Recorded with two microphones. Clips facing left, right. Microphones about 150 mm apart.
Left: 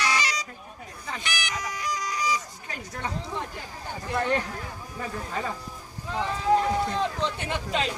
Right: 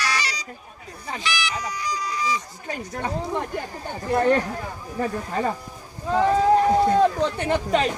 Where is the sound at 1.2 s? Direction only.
55° left (ahead or behind).